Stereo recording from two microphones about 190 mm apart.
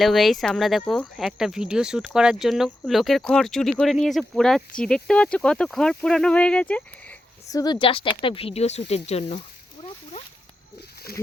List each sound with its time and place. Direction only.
0.0 s speech: centre (ahead or behind)
7.5 s speech: 20° left (ahead or behind)
9.8 s a sound: 35° left (ahead or behind)
11.1 s speech: 55° left (ahead or behind)